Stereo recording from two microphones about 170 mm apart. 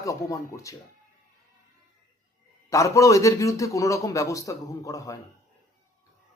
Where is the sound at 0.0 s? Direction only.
20° left (ahead or behind).